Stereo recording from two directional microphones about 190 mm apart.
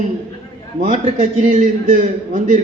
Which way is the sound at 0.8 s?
45° right (ahead or behind).